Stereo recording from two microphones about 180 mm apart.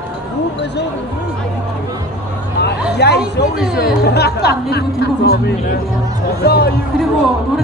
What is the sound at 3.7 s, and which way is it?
Speech, 60° left (ahead or behind).